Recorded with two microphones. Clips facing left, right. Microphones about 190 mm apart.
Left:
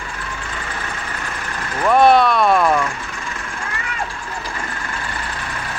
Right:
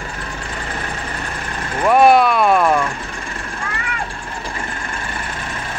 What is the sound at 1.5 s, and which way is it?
Vehicle, 30° right (ahead or behind).